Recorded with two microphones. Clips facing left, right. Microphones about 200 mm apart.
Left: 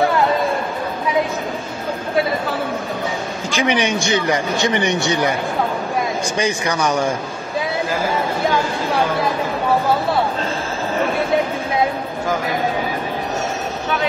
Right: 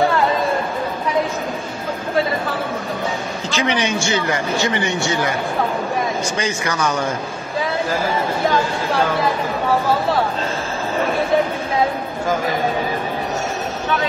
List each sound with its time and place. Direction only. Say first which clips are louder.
3.4 s speech: left 2 dB; 15° left (ahead or behind)
6.3 s speech: left 2 dB; 15° left (ahead or behind)